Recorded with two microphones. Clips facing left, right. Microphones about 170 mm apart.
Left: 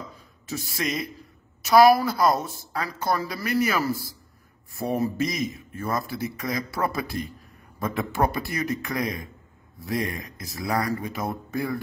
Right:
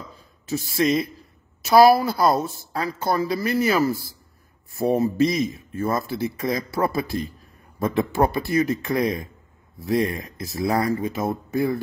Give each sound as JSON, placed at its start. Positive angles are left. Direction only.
{"t": 0.5, "sound": "speech", "side_deg": -30}